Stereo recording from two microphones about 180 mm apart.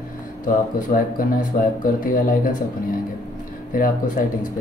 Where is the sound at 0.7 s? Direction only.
50° left (ahead or behind).